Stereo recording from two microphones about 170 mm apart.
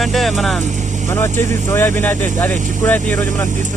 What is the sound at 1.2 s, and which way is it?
Speech, 15° left (ahead or behind).